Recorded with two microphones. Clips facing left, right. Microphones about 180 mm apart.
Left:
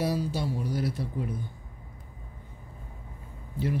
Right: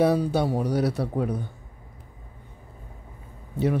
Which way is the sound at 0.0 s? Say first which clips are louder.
Right 8 dB; 60° right (ahead or behind).